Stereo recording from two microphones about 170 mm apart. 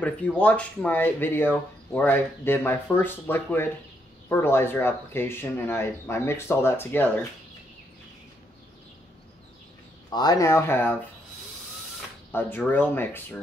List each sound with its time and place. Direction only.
0.0 s speech: 10° left (ahead or behind)
10.0 s speech: 25° left (ahead or behind)
12.3 s speech: 10° left (ahead or behind)